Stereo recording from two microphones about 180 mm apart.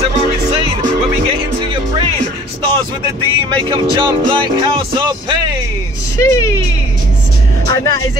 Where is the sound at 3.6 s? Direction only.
25° right (ahead or behind).